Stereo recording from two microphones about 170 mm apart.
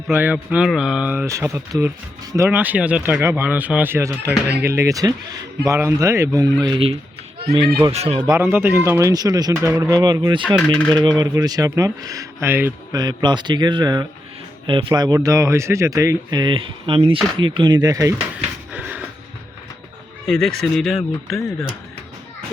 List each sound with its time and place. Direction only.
0.1 s speech: 10° right (ahead or behind); by 8.2 s 35° right (ahead or behind)
8.3 s speech: 15° right (ahead or behind)
12.9 s speech: 25° right (ahead or behind)
18.7 s a sound: 10° right (ahead or behind)
20.2 s speech: 5° left (ahead or behind)
21.2 s speech: 15° left (ahead or behind)